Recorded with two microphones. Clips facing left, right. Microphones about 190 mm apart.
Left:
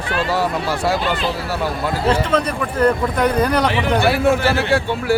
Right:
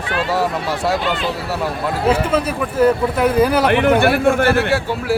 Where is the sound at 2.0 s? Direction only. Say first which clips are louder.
Right 1 dB; 5° right (ahead or behind).